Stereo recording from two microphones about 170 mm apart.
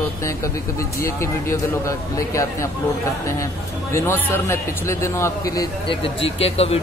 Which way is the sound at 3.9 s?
15° left (ahead or behind).